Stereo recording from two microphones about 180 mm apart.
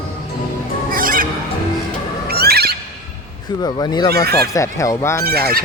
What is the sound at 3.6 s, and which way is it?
Speech, 20° left (ahead or behind).